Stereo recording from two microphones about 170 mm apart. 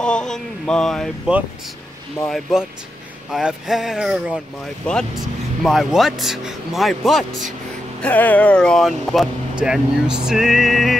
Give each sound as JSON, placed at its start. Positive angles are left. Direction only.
{"t": 0.0, "sound": "speech", "side_deg": 5}
{"t": 5.6, "sound": "speech", "side_deg": 0}